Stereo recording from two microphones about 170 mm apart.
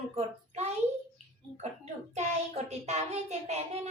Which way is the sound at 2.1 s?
40° right (ahead or behind).